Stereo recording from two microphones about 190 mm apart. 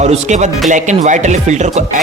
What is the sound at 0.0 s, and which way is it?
Speech, 35° right (ahead or behind).